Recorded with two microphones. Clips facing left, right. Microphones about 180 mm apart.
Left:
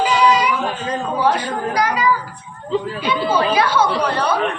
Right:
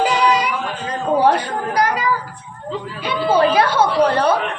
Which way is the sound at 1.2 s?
55° right (ahead or behind).